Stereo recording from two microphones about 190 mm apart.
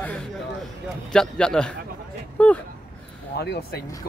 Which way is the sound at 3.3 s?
60° left (ahead or behind).